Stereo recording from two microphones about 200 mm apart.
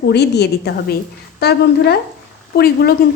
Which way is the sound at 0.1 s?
55° left (ahead or behind).